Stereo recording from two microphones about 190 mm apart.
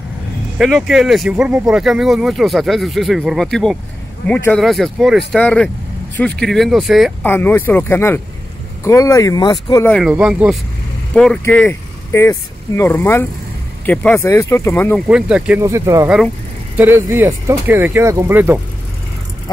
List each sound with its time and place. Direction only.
0.6 s speech: centre (ahead or behind)
7.2 s speech: 10° left (ahead or behind)
9.8 s speech: 5° left (ahead or behind)
15.0 s speech: 5° right (ahead or behind)